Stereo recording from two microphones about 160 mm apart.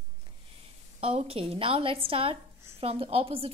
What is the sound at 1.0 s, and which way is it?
A woman's voice, 35° right (ahead or behind).